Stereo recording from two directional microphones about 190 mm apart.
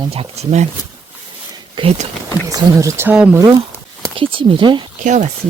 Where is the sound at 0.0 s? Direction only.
30° right (ahead or behind).